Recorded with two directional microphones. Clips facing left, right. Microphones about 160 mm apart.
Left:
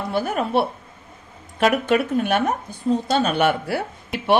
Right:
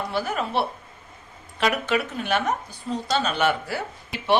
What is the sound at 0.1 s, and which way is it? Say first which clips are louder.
A woman's voice: left 8 dB; 55° left (ahead or behind).